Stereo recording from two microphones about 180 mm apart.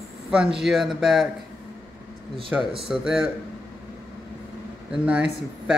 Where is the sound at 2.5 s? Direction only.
10° right (ahead or behind).